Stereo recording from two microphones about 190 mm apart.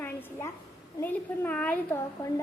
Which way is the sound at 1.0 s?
5° left (ahead or behind).